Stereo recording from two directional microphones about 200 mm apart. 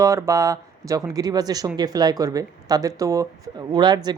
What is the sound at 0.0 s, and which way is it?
Speech, 15° right (ahead or behind).